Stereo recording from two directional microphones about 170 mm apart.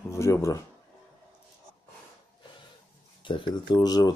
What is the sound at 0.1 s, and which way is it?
Speech, 15° left (ahead or behind).